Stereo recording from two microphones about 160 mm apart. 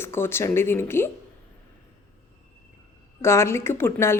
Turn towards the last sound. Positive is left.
turn(degrees=15)  # may be behind; listen again after turning